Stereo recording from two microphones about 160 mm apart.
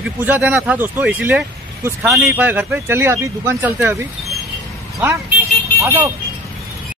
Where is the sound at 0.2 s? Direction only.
10° right (ahead or behind).